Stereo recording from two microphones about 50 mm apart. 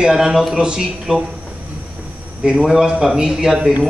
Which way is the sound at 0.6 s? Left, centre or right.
Centre.